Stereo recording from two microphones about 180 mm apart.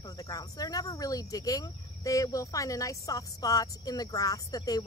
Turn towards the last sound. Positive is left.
turn(degrees=20)  # may be behind; listen again after turning